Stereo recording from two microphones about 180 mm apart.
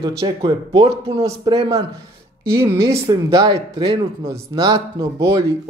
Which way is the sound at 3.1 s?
25° right (ahead or behind).